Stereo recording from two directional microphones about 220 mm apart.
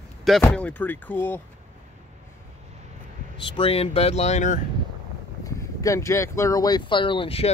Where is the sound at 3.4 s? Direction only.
25° left (ahead or behind).